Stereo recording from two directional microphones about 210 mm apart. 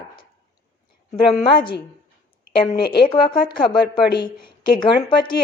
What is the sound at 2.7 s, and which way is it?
Speech, 50° left (ahead or behind).